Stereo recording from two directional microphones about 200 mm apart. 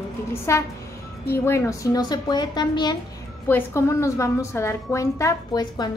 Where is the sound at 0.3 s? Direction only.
15° left (ahead or behind).